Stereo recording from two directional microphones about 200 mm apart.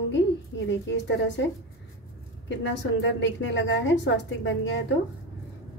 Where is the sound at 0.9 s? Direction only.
65° left (ahead or behind).